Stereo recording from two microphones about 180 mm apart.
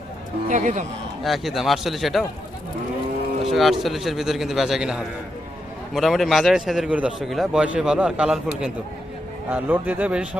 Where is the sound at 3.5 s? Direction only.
Centre (ahead or behind).